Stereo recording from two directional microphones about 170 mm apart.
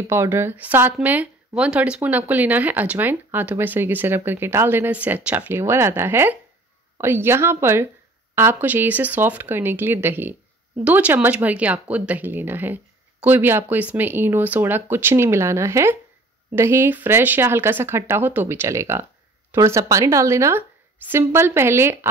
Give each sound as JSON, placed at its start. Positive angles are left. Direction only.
{"t": 0.1, "sound": "speech", "side_deg": -15}